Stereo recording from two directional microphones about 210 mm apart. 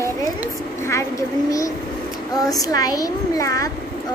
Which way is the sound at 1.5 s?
15° left (ahead or behind).